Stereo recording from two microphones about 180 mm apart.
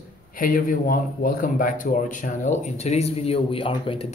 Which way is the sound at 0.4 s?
50° left (ahead or behind).